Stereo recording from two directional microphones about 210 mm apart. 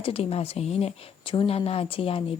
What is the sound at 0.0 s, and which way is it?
A woman's voice, 30° left (ahead or behind).